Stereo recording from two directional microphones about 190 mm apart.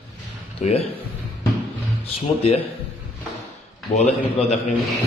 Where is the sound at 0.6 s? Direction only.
35° left (ahead or behind).